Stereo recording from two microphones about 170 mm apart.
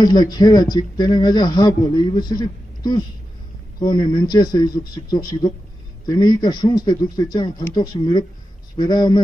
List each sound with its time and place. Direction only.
0.0 s speech: 25° left (ahead or behind)